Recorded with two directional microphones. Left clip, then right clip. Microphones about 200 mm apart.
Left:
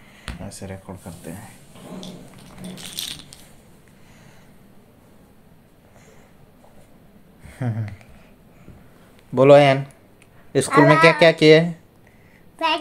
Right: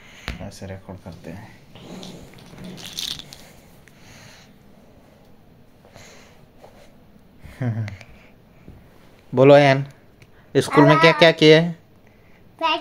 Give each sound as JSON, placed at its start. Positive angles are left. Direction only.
{"t": 0.4, "sound": "speech", "side_deg": 5}
{"t": 2.7, "sound": "biting", "side_deg": -15}
{"t": 4.1, "sound": "a sound", "side_deg": -50}
{"t": 7.5, "sound": "speech", "side_deg": -5}
{"t": 9.3, "sound": "speech", "side_deg": -15}
{"t": 12.6, "sound": "a child's voice", "side_deg": 0}